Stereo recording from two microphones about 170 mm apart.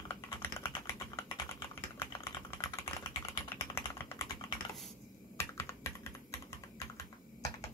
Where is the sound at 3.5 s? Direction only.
15° left (ahead or behind).